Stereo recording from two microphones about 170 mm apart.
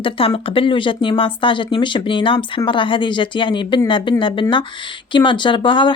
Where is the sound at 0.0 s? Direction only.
35° left (ahead or behind).